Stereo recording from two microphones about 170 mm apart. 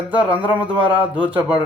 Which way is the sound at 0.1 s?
10° right (ahead or behind).